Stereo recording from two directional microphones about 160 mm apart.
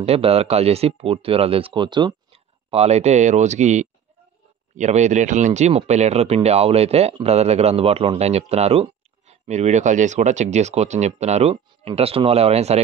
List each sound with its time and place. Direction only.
0.0 s speech: 40° right (ahead or behind)